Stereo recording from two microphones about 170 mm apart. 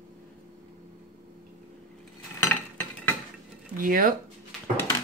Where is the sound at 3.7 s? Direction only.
55° right (ahead or behind).